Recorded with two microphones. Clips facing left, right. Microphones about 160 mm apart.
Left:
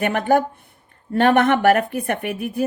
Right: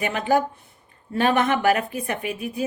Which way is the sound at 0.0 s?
55° left (ahead or behind).